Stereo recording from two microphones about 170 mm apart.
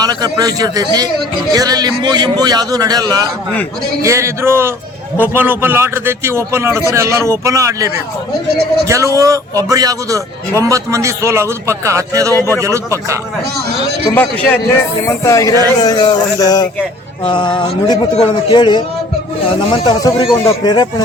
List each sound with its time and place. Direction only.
0.0 s a man's voice: 20° right (ahead or behind)
8.9 s a man's voice: 20° right (ahead or behind)
12.3 s a man's voice: 15° left (ahead or behind)
12.5 s a man's voice: 15° right (ahead or behind)
14.1 s a man's voice: 10° left (ahead or behind)